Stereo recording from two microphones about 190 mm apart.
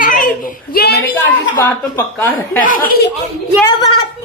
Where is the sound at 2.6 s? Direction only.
50° left (ahead or behind).